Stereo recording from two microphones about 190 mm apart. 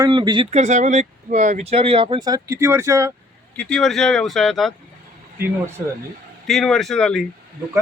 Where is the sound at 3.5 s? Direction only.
5° left (ahead or behind).